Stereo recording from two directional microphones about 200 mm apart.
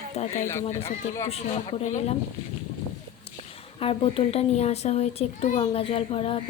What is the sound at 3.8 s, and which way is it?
A child's voice, 30° left (ahead or behind).